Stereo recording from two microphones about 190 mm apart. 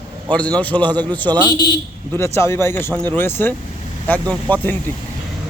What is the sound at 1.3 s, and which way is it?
Speech, 25° right (ahead or behind).